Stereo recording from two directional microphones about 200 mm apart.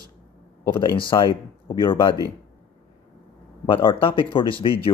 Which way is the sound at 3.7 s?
25° left (ahead or behind).